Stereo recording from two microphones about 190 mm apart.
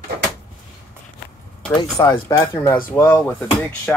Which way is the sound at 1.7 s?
20° left (ahead or behind).